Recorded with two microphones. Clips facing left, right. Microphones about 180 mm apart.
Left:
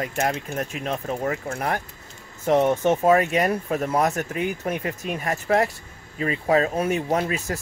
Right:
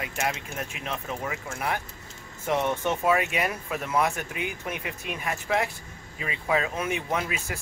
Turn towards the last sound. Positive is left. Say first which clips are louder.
# left 6 dB
turn(degrees=40)  # may be behind; listen again after turning